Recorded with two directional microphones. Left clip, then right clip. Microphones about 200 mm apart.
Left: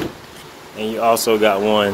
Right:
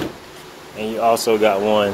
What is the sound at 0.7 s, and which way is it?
Speech, 15° left (ahead or behind).